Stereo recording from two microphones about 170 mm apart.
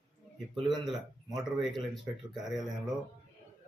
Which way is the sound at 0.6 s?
Centre (ahead or behind).